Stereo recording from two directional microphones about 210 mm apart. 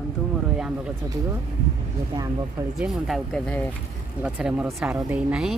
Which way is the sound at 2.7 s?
Centre (ahead or behind).